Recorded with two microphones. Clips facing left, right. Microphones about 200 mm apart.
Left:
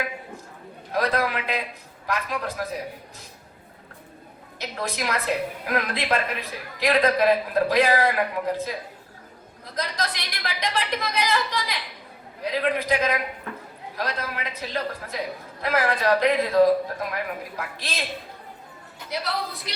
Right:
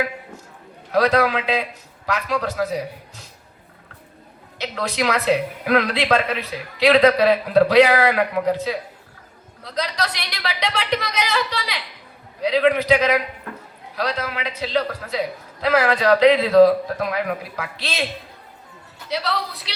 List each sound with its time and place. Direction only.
0.9 s a man's voice: 85° right
2.0 s a woman's voice: 80° right
4.5 s a woman's voice: 80° right
19.1 s a woman's voice: 85° right